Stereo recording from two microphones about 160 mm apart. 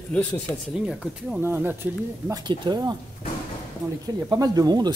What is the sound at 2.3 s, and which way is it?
Speech, 25° right (ahead or behind).